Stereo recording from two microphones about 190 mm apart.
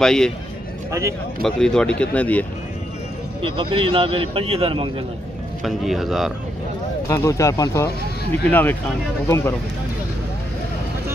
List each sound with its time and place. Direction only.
0.0 s speech: 5° left (ahead or behind)
1.4 s speech: 5° left (ahead or behind)
3.4 s a man's voice: 25° right (ahead or behind)
5.6 s speech: centre (ahead or behind)
7.1 s speech: 15° left (ahead or behind)